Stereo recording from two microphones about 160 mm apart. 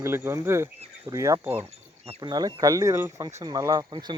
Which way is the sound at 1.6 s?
40° right (ahead or behind).